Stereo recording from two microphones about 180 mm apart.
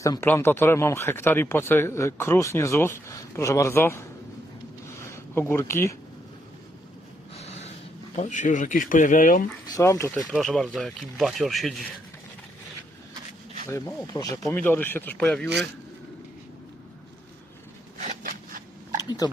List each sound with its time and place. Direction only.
0.0 s speech: 15° left (ahead or behind)
7.3 s snort: 35° left (ahead or behind)
8.1 s speech: 40° left (ahead or behind)
9.6 s speech: 20° left (ahead or behind)
10.3 s speech: centre (ahead or behind)
13.7 s speech: 15° left (ahead or behind)
17.9 s a sound: 40° right (ahead or behind)
19.0 s speech: 20° left (ahead or behind)